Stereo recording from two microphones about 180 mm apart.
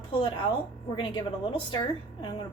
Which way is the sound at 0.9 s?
25° left (ahead or behind).